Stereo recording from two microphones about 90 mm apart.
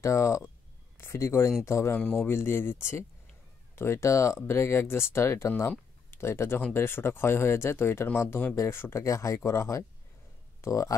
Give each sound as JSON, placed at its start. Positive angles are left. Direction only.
{"t": 0.0, "sound": "speech", "side_deg": 35}